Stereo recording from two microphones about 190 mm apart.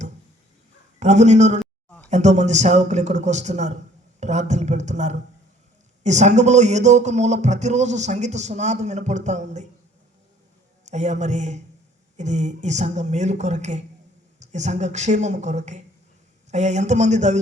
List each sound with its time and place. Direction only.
0.9 s music: 40° right (ahead or behind)
10.9 s music: 40° right (ahead or behind)